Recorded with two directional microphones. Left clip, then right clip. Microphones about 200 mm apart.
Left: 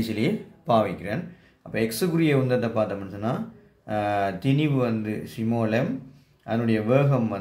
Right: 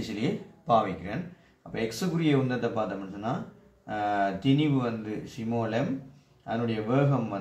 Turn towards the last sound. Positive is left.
turn(degrees=50)  # may be behind; listen again after turning